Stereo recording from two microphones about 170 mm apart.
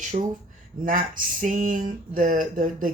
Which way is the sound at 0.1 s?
40° right (ahead or behind).